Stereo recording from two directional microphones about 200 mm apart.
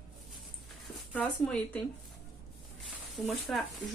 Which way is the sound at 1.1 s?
5° left (ahead or behind).